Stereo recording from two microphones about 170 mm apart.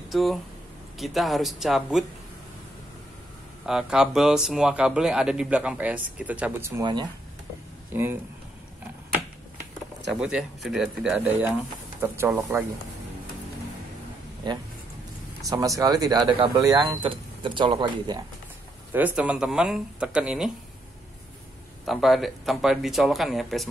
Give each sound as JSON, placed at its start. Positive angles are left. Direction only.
{"t": 0.1, "sound": "speech", "side_deg": 0}
{"t": 3.6, "sound": "speech", "side_deg": -5}
{"t": 6.8, "sound": "speech", "side_deg": -25}
{"t": 7.9, "sound": "speech", "side_deg": -15}
{"t": 10.2, "sound": "speech", "side_deg": 0}
{"t": 14.4, "sound": "speech", "side_deg": -25}
{"t": 18.9, "sound": "speech", "side_deg": -10}
{"t": 21.8, "sound": "speech", "side_deg": 0}